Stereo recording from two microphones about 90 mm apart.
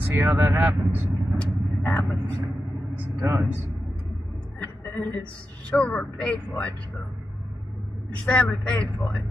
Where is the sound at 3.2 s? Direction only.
25° right (ahead or behind).